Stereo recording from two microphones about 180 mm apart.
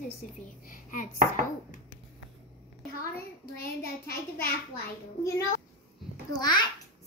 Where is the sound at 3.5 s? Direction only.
60° left (ahead or behind).